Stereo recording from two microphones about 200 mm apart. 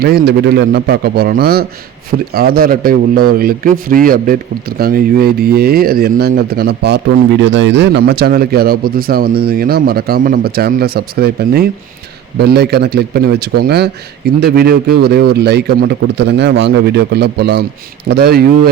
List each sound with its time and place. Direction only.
0.0 s speech: 55° right (ahead or behind)
7.4 s a man's voice: 65° right (ahead or behind); by 18.7 s 50° right (ahead or behind)